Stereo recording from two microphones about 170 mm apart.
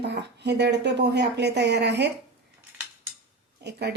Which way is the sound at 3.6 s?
80° right.